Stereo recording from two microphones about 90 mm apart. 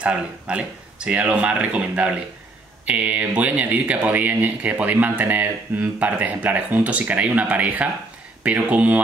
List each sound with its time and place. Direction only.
0.0 s speech: 15° right (ahead or behind)